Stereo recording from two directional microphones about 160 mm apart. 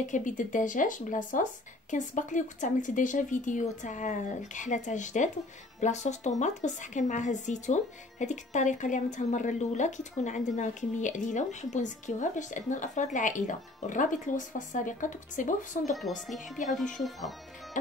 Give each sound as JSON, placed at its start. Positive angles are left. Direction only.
{"t": 0.0, "sound": "speech", "side_deg": 50}
{"t": 16.6, "sound": "speech", "side_deg": 0}